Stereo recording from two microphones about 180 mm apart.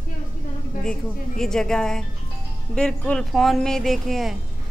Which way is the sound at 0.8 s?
5° left (ahead or behind).